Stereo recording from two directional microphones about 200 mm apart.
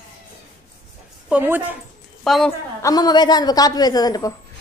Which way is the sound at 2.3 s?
Centre (ahead or behind).